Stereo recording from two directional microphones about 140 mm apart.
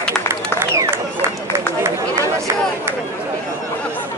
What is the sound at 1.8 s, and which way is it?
Chatter, 20° right (ahead or behind).